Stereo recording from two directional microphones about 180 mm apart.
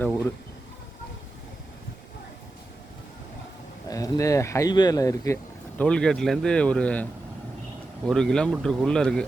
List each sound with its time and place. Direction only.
3.8 s speech: 20° left (ahead or behind); by 9.2 s 5° left (ahead or behind)